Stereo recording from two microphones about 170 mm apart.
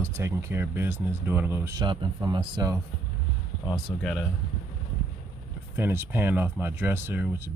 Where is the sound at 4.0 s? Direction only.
Centre (ahead or behind).